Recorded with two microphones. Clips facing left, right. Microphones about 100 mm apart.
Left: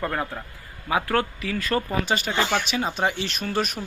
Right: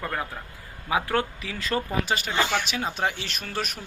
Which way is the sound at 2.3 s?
10° left (ahead or behind).